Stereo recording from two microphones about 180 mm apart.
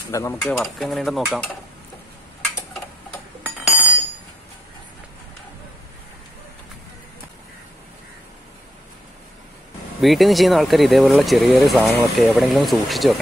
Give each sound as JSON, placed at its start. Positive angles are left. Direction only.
{"t": 0.1, "sound": "stir", "side_deg": 15}
{"t": 0.4, "sound": "speech", "side_deg": 0}
{"t": 3.4, "sound": "a sound", "side_deg": -10}
{"t": 10.0, "sound": "speech", "side_deg": 0}